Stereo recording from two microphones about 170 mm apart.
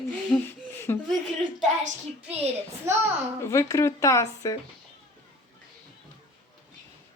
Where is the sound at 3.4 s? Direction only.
15° left (ahead or behind).